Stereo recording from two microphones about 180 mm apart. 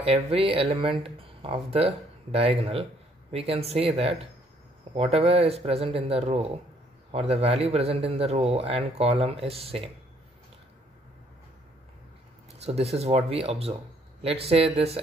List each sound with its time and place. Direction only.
0.0 s speech: 30° right (ahead or behind)
12.6 s speech: 35° right (ahead or behind)